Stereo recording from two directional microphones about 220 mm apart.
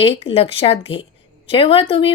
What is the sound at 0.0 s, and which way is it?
A woman's voice, 25° left (ahead or behind).